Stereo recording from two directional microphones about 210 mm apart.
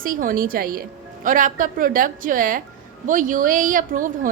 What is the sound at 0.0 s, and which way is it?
A woman's voice, 40° right (ahead or behind).